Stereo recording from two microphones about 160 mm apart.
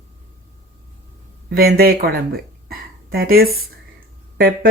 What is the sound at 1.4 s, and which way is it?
Speech, 70° right (ahead or behind).